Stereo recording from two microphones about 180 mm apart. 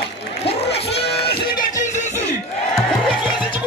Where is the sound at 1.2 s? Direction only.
30° left (ahead or behind).